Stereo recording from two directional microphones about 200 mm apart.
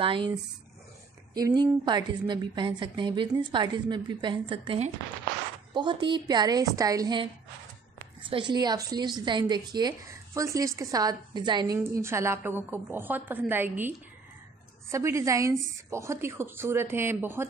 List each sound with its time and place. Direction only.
0.0 s a woman's voice: 25° right (ahead or behind)
8.3 s a woman's voice: 25° right (ahead or behind)